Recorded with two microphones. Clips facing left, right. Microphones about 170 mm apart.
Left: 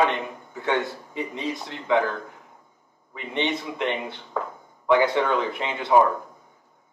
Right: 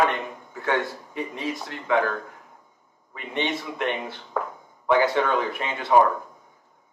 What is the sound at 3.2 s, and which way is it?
A man's voice, 20° left (ahead or behind).